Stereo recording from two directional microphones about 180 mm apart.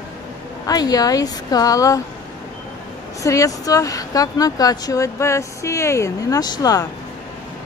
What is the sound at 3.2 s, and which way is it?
Speech, 20° left (ahead or behind).